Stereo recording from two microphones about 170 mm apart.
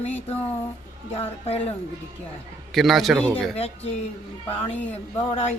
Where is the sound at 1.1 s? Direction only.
35° left (ahead or behind).